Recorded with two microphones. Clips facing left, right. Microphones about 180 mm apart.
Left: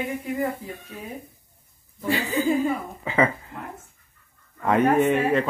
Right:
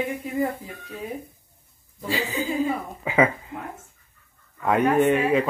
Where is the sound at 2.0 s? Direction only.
55° left (ahead or behind).